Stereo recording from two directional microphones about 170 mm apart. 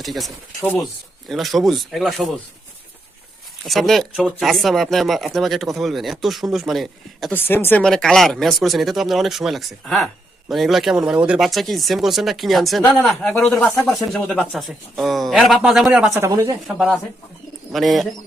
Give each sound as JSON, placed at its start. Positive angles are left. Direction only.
{"t": 0.0, "sound": "speech", "side_deg": 0}
{"t": 3.7, "sound": "speech", "side_deg": 0}
{"t": 7.3, "sound": "speech", "side_deg": 10}
{"t": 14.1, "sound": "speech", "side_deg": 5}
{"t": 16.1, "sound": "speech", "side_deg": -15}
{"t": 16.6, "sound": "speech", "side_deg": 0}